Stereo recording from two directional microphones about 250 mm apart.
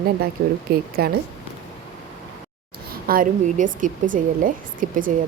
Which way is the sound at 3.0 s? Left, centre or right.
Right.